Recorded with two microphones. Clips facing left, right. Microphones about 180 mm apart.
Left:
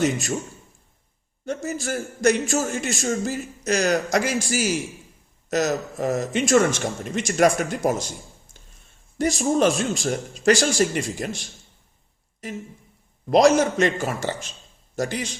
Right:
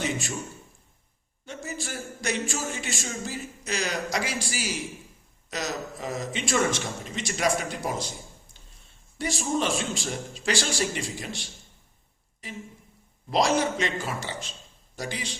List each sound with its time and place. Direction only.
0.0 s a man's voice: 45° left (ahead or behind)
1.5 s a man's voice: 45° left (ahead or behind)
9.1 s a man's voice: 45° left (ahead or behind)
13.3 s a man's voice: 45° left (ahead or behind)